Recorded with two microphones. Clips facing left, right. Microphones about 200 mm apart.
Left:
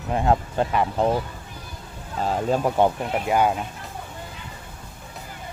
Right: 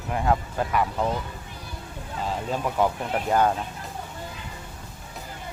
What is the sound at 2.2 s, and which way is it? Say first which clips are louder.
Speech: left 6 dB; 45° left (ahead or behind).